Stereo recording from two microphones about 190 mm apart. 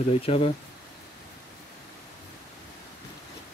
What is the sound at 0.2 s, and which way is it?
Speech, 30° left (ahead or behind).